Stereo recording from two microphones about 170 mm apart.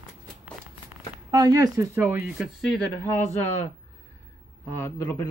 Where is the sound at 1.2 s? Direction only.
20° right (ahead or behind); by 2.8 s centre (ahead or behind).